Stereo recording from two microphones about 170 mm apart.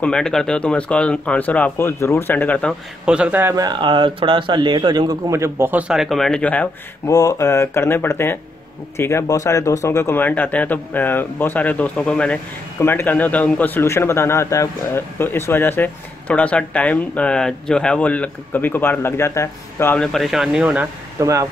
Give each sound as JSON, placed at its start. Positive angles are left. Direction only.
{"t": 0.0, "sound": "a man's voice", "side_deg": 5}
{"t": 3.1, "sound": "speech", "side_deg": -5}
{"t": 3.5, "sound": "a man's voice", "side_deg": -25}
{"t": 20.1, "sound": "speech", "side_deg": 0}